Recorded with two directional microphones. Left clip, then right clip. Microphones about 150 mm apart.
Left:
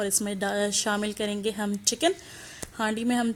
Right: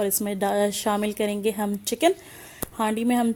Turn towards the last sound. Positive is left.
turn(degrees=-20)  # may be behind; listen again after turning